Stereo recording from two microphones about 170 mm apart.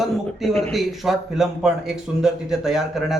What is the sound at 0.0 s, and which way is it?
A man's voice, centre (ahead or behind).